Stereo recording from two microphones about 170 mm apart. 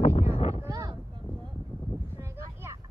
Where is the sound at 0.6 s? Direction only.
20° right (ahead or behind).